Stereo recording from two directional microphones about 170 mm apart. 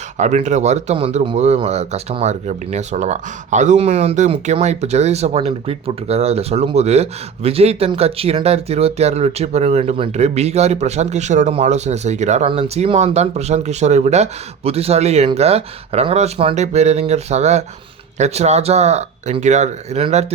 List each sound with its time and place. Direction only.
0.2 s speech: 45° right (ahead or behind)